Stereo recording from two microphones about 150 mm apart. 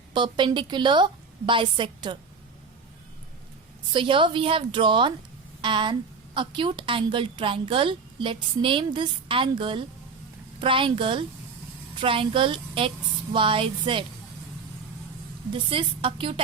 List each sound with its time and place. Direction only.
0.1 s a woman's voice: 30° right (ahead or behind)
3.9 s a woman's voice: 35° right (ahead or behind)
15.4 s a woman's voice: 35° right (ahead or behind)